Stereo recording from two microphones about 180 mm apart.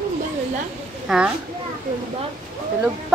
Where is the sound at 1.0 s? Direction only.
5° right (ahead or behind).